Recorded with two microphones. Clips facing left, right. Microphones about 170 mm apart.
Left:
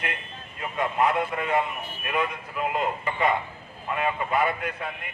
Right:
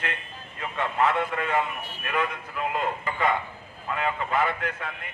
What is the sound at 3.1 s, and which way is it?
Speech, 20° left (ahead or behind).